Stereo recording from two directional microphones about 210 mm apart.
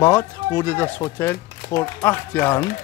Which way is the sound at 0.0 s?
10° left (ahead or behind).